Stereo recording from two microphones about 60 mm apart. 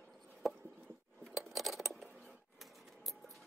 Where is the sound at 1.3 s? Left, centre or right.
Centre.